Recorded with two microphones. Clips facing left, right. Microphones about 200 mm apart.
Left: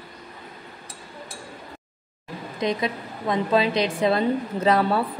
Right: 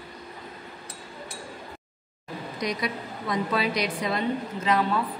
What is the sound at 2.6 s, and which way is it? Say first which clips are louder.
A woman's voice: left 5 dB; 25° left (ahead or behind).